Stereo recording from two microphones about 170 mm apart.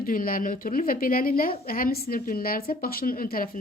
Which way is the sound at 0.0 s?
55° left (ahead or behind).